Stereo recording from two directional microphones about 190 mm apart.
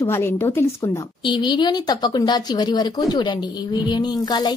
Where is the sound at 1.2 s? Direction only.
25° left (ahead or behind).